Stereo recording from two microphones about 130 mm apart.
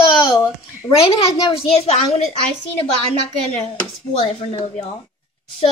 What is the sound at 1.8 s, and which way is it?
Speech, 55° left (ahead or behind).